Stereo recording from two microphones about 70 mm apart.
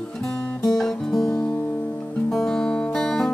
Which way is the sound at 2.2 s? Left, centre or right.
Centre.